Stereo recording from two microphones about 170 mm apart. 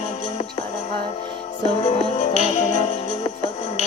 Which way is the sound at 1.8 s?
40° left (ahead or behind).